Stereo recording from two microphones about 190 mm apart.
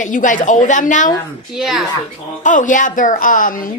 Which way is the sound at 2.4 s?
40° left (ahead or behind).